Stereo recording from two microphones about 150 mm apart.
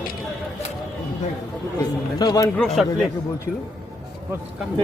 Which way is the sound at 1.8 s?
25° left (ahead or behind).